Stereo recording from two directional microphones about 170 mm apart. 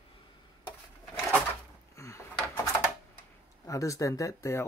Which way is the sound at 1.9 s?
15° left (ahead or behind).